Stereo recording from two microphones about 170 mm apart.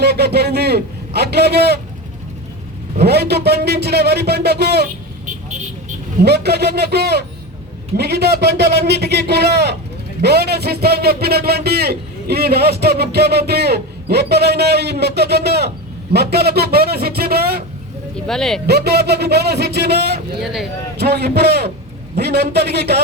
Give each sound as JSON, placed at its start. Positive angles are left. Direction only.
{"t": 0.0, "sound": "a sound", "side_deg": -70}
{"t": 3.0, "sound": "a man's voice", "side_deg": -70}
{"t": 6.2, "sound": "a man's voice", "side_deg": -75}
{"t": 18.3, "sound": "speech", "side_deg": 0}
{"t": 18.6, "sound": "a man's voice", "side_deg": -70}
{"t": 20.4, "sound": "speech", "side_deg": 0}
{"t": 21.0, "sound": "a man's voice", "side_deg": -70}